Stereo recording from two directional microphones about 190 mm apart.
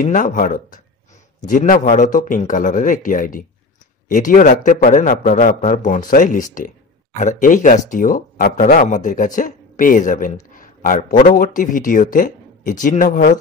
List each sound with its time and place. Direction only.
0.0 s speech: 45° left (ahead or behind)